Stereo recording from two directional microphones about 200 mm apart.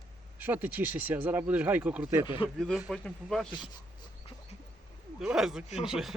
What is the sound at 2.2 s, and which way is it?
Speech, 25° left (ahead or behind).